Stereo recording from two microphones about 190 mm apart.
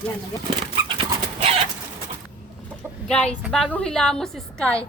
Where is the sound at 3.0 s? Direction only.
5° left (ahead or behind).